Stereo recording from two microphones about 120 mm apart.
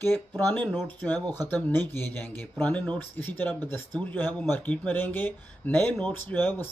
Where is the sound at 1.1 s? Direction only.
35° right (ahead or behind).